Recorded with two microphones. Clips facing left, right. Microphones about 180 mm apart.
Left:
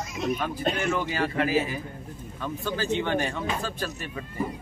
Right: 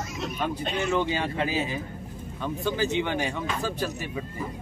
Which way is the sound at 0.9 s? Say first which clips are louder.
Right 1 dB; 20° right (ahead or behind).